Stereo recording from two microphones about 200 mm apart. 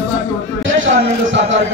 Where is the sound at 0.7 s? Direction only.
70° right (ahead or behind).